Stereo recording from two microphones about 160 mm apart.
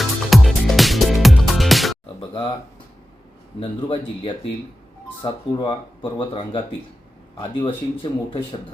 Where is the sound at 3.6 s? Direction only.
35° left (ahead or behind).